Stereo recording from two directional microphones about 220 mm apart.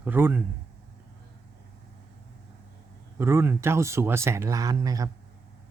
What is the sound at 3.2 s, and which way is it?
Speech, 10° right (ahead or behind).